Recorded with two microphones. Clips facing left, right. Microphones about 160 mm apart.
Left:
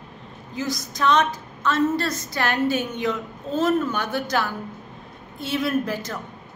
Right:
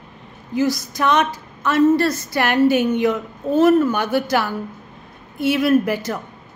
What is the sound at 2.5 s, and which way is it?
A woman's voice, 65° right (ahead or behind).